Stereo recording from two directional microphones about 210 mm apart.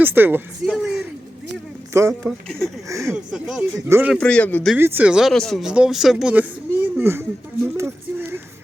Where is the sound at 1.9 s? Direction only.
15° right (ahead or behind).